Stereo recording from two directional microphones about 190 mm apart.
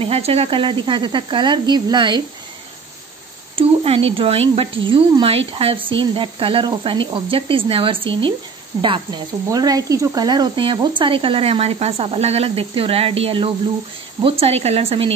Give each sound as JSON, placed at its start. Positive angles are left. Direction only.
{"t": 0.0, "sound": "sizzle", "side_deg": -30}
{"t": 3.5, "sound": "speech", "side_deg": -30}
{"t": 4.8, "sound": "sizzle", "side_deg": -25}
{"t": 14.2, "sound": "speech", "side_deg": -30}